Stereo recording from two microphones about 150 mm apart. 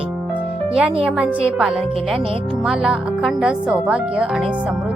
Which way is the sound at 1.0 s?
5° right (ahead or behind).